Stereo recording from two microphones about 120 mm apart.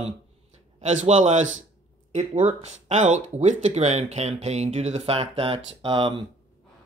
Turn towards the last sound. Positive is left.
turn(degrees=-45)  # may be behind; listen again after turning